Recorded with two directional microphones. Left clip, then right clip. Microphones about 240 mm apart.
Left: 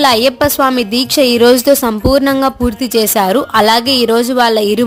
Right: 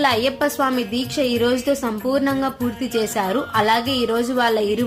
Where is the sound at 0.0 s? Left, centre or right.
Left.